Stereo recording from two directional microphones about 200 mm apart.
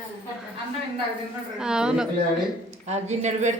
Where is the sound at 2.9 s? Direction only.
35° right (ahead or behind).